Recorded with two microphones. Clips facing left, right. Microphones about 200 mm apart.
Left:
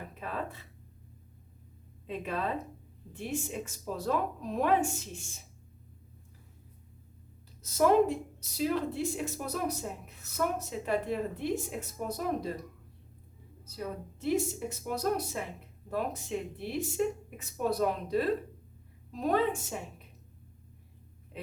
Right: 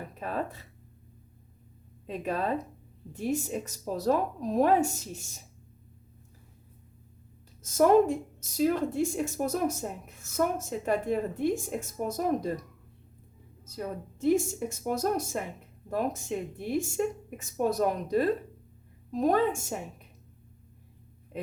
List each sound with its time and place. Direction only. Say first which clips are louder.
0.2 s speech: right 4 dB; 40° right (ahead or behind)
2.0 s a woman's voice: right 4 dB; 40° right (ahead or behind)
7.6 s speech: right 3 dB; 50° right (ahead or behind)
13.7 s speech: right 2 dB; 45° right (ahead or behind)
21.3 s a sound: right 6 dB; 45° right (ahead or behind)